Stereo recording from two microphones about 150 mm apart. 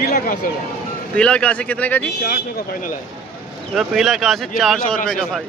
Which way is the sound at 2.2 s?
80° left.